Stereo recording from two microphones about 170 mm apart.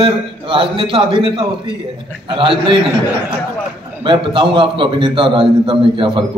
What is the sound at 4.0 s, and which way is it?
A man's voice, 30° right (ahead or behind).